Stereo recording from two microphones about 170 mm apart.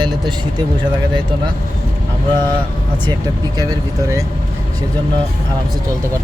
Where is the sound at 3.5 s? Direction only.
20° right (ahead or behind).